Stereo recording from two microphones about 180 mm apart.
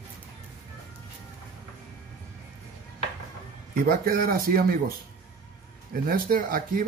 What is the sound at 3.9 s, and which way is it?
Speech, 55° right (ahead or behind).